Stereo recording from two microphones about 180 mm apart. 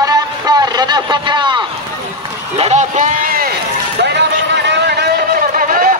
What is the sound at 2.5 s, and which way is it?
Run, 40° right (ahead or behind).